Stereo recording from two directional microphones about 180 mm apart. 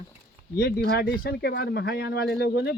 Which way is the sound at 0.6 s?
65° left (ahead or behind).